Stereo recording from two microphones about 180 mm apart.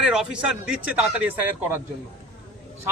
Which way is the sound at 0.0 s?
5° right (ahead or behind).